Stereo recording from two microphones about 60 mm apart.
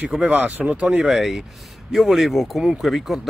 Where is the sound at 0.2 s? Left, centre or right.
Right.